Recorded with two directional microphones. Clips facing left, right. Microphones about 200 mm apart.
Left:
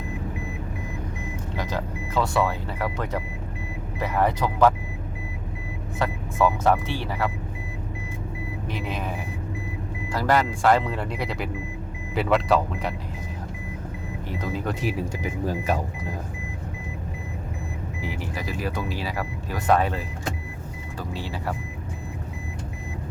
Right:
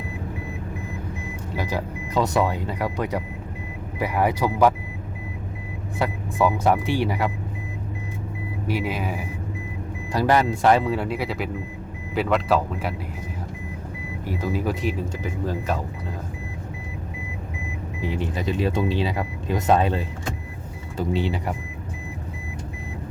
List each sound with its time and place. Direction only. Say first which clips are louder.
1.5 s speech: right 2 dB; 10° right (ahead or behind)
6.0 s speech: right 1 dB; 10° right (ahead or behind)
8.6 s speech: right 5 dB; 10° right (ahead or behind)
10.8 s speech: right 4 dB; 5° right (ahead or behind)
14.5 s speech: right 2 dB; 5° right (ahead or behind)
15.2 s speech: even; 10° left (ahead or behind)
18.0 s speech: right 6 dB; 25° right (ahead or behind)